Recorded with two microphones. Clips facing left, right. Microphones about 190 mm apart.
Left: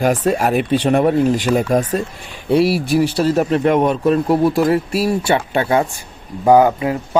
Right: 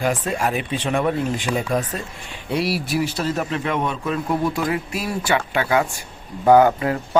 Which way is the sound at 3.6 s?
45° left (ahead or behind).